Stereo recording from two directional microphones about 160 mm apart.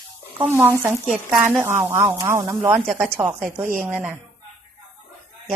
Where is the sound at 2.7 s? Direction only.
Centre (ahead or behind).